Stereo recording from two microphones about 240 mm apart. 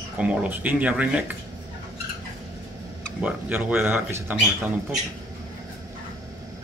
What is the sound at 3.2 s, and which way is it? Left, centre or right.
A man's voice, centre.